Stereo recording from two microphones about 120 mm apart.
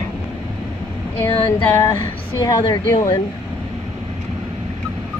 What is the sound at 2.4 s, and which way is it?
Speech, 30° left (ahead or behind).